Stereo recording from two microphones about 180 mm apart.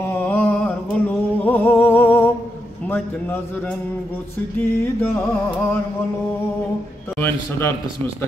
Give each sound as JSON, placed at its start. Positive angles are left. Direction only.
{"t": 0.0, "sound": "a sound", "side_deg": 10}
{"t": 2.9, "sound": "a man's voice", "side_deg": 10}
{"t": 5.0, "sound": "a man's voice", "side_deg": 15}
{"t": 7.2, "sound": "a man's voice", "side_deg": 10}